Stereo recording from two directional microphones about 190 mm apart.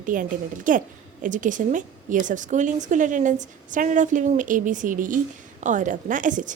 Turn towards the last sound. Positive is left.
turn(degrees=-40)  # may be behind; listen again after turning